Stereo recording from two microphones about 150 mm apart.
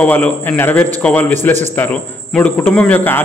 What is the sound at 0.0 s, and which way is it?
A man's voice, 10° left (ahead or behind).